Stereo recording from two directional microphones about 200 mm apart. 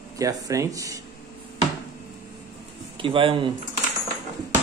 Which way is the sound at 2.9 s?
25° right (ahead or behind).